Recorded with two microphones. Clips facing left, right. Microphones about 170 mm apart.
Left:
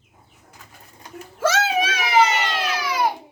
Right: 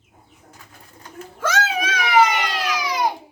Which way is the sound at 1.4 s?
25° left (ahead or behind).